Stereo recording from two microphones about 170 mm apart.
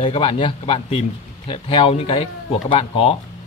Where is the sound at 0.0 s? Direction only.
30° left (ahead or behind).